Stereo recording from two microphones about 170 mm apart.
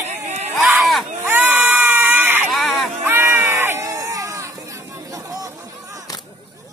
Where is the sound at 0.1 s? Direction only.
40° right (ahead or behind).